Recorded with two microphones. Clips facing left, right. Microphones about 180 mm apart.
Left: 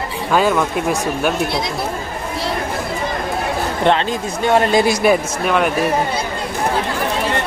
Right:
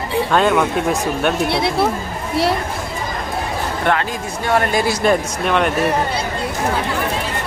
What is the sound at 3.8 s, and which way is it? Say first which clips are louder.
Speech: left 4 dB; 25° left (ahead or behind).